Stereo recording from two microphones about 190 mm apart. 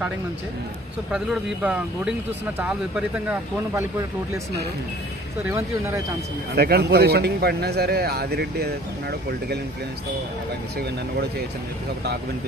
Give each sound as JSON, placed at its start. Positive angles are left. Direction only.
{"t": 1.1, "sound": "speech", "side_deg": -5}
{"t": 6.5, "sound": "a man's voice", "side_deg": -55}